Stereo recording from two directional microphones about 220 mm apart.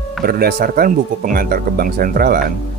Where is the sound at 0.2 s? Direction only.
45° right (ahead or behind).